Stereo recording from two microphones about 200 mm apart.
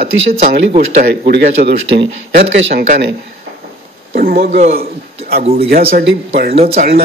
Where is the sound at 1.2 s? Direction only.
55° right (ahead or behind).